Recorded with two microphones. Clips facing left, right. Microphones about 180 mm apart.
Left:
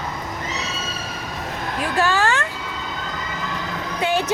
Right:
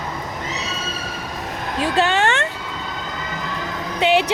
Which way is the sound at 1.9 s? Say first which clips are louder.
Right 1 dB; 20° right (ahead or behind).